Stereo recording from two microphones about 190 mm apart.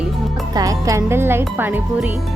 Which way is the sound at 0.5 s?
20° right (ahead or behind).